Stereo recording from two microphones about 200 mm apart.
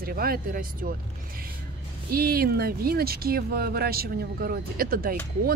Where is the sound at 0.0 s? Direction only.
45° right (ahead or behind).